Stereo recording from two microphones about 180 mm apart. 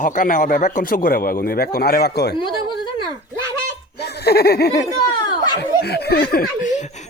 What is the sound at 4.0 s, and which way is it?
Snicker, 65° left (ahead or behind).